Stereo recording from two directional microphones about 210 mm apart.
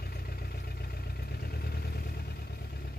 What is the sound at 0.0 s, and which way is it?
Vehicle, 45° left (ahead or behind).